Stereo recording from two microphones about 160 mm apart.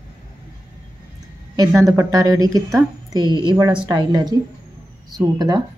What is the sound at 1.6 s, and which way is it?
Speech, 20° right (ahead or behind).